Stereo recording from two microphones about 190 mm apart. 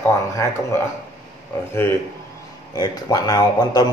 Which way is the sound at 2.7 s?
20° left (ahead or behind).